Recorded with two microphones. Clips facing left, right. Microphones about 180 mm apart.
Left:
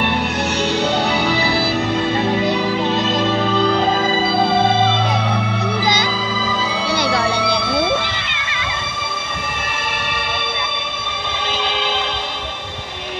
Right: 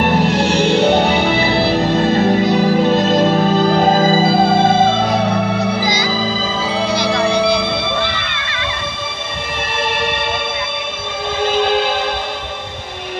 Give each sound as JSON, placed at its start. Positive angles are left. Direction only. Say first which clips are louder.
{"t": 0.0, "sound": "music", "louder": "right 6 dB", "side_deg": -40}
{"t": 2.0, "sound": "music", "louder": "right 5 dB", "side_deg": -45}
{"t": 11.5, "sound": "music", "louder": "right 8 dB", "side_deg": -50}